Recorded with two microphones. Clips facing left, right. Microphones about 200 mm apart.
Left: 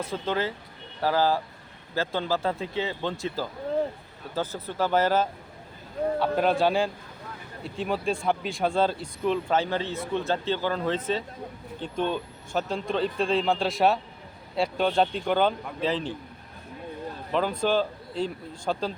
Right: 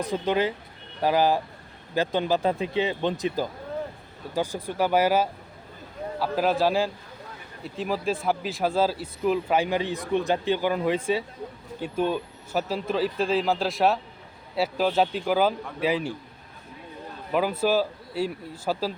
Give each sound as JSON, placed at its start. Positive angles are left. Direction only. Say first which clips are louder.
{"t": 0.0, "sound": "speech", "louder": "right 4 dB", "side_deg": -15}
{"t": 17.3, "sound": "speech", "louder": "right 2 dB", "side_deg": -5}